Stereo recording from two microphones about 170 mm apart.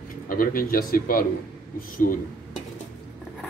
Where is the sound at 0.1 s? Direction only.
55° left (ahead or behind).